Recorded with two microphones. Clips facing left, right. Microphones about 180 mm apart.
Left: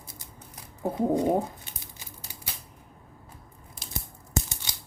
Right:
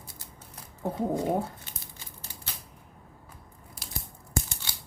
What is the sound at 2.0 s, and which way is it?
Scissors, 10° left (ahead or behind).